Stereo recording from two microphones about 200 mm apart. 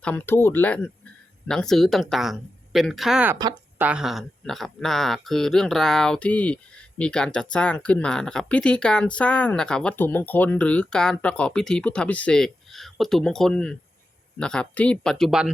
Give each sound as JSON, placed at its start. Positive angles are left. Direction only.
{"t": 0.0, "sound": "speech", "side_deg": 10}
{"t": 3.3, "sound": "speech", "side_deg": -25}
{"t": 3.8, "sound": "speech", "side_deg": -5}